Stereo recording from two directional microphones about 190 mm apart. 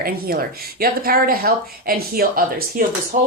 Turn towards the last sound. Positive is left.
turn(degrees=-45)  # may be behind; listen again after turning